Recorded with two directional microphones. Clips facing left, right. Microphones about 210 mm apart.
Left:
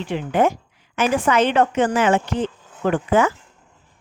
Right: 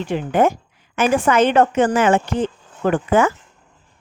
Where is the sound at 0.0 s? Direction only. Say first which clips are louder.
Right 2 dB; 45° right (ahead or behind).